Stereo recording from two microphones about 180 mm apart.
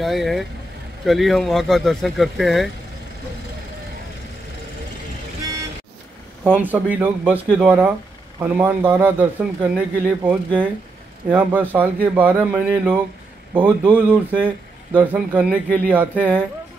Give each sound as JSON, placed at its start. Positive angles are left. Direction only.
{"t": 0.0, "sound": "speech", "side_deg": 0}
{"t": 5.4, "sound": "vehicle", "side_deg": -20}
{"t": 6.5, "sound": "a man's voice", "side_deg": -10}